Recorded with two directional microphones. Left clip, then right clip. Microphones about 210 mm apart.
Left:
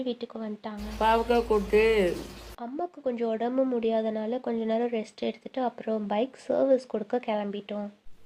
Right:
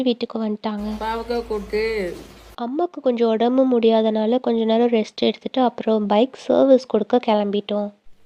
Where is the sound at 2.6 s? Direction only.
35° right (ahead or behind).